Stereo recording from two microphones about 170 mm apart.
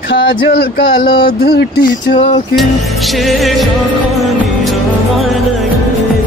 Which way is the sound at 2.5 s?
Centre (ahead or behind).